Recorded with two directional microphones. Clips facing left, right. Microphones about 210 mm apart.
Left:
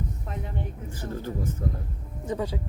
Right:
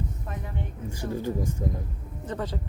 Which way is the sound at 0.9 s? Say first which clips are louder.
Right 3 dB; 15° right (ahead or behind).